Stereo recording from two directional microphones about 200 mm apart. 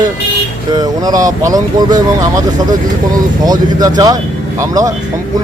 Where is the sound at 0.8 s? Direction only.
20° right (ahead or behind).